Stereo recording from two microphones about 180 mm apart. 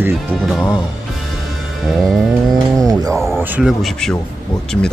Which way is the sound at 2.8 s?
20° right (ahead or behind).